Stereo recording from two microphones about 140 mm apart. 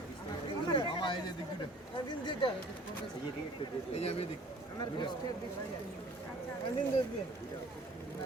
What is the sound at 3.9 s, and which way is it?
Speech, 50° left (ahead or behind).